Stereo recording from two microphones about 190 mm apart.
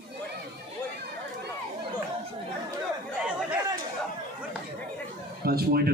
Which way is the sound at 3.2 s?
5° right (ahead or behind).